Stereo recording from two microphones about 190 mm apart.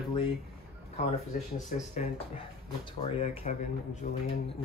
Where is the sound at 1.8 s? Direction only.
40° left (ahead or behind).